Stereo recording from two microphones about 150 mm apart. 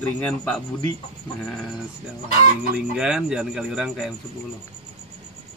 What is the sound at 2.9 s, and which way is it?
Speech, 5° right (ahead or behind).